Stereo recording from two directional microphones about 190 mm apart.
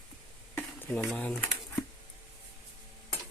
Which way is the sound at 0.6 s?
10° left (ahead or behind).